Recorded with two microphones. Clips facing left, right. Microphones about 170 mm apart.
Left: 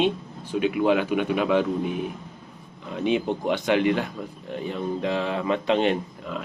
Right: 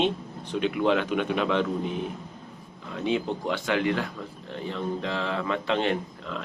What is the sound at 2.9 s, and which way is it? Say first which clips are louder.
Speech: left 3 dB; 20° left (ahead or behind).